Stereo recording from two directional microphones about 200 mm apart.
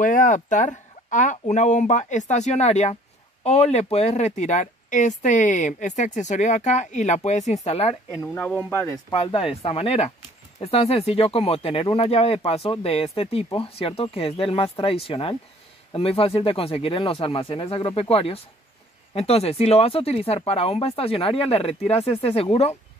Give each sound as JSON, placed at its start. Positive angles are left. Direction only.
{"t": 0.0, "sound": "speech", "side_deg": 40}
{"t": 8.1, "sound": "speech", "side_deg": 15}
{"t": 9.1, "sound": "speech", "side_deg": 25}